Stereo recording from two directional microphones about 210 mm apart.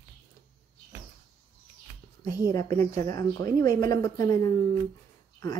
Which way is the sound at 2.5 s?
15° left (ahead or behind).